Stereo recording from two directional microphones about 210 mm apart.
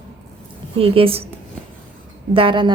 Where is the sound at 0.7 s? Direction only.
25° right (ahead or behind).